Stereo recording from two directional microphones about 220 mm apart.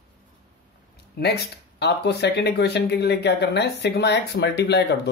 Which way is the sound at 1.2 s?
45° left (ahead or behind).